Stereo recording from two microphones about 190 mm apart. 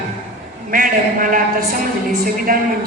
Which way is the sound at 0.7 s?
45° right (ahead or behind).